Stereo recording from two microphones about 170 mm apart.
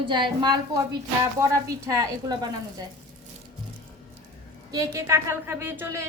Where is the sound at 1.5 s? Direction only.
20° right (ahead or behind).